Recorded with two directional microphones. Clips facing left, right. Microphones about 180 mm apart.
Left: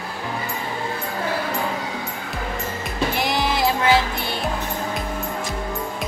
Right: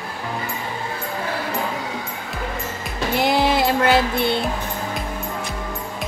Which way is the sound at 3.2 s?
60° right (ahead or behind).